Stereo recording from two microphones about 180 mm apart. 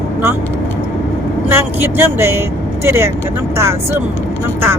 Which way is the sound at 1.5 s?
10° right (ahead or behind).